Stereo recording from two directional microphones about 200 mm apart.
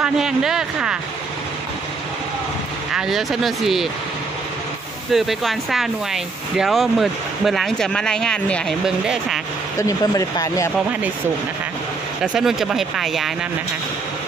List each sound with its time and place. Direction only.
0.0 s a sound: centre (ahead or behind)
2.9 s speech: centre (ahead or behind)
5.1 s speech: centre (ahead or behind)
9.8 s speech: 15° left (ahead or behind)
12.2 s speech: centre (ahead or behind)